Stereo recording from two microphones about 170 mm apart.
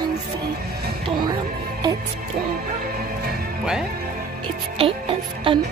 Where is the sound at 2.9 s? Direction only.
60° right (ahead or behind).